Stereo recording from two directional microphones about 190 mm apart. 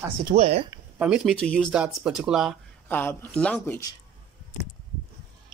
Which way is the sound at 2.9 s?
10° left (ahead or behind).